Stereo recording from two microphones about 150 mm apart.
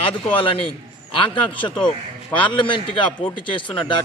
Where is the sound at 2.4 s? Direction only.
35° left (ahead or behind).